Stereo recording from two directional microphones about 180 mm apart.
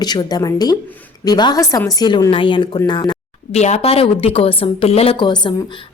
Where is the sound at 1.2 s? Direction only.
20° left (ahead or behind).